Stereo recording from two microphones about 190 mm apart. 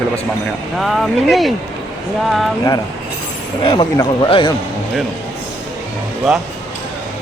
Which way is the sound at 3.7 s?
20° left (ahead or behind).